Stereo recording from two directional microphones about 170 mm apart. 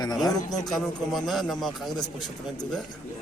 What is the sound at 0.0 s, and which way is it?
Speech, 25° left (ahead or behind).